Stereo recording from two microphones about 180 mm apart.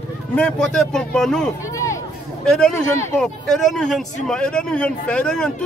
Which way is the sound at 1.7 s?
15° left (ahead or behind).